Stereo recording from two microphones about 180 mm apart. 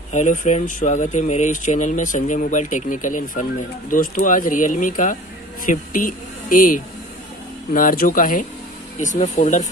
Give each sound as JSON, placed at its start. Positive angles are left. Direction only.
{"t": 0.1, "sound": "speech", "side_deg": 45}